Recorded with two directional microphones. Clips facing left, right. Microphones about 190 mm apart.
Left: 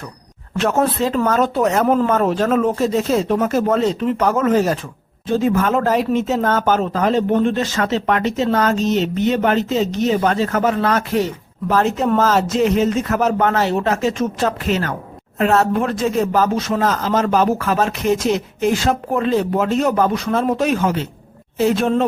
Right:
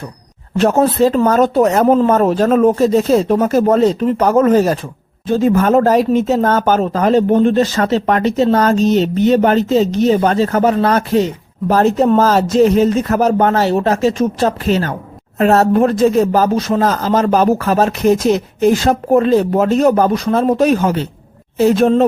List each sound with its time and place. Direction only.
0.9 s speech: 35° right (ahead or behind)